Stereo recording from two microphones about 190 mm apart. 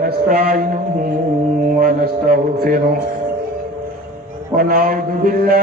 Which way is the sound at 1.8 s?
45° right (ahead or behind).